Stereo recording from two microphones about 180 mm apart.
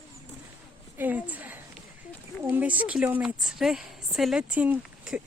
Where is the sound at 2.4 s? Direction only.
10° right (ahead or behind).